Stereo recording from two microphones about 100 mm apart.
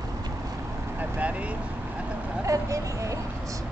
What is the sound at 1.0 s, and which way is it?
Speech, 15° right (ahead or behind).